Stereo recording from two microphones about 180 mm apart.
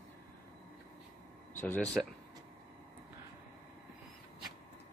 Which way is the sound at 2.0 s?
5° right (ahead or behind).